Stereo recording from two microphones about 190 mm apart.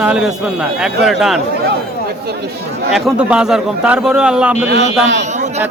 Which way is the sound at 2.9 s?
5° right (ahead or behind).